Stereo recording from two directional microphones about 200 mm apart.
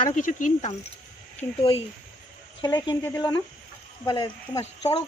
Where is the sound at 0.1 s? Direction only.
40° left (ahead or behind).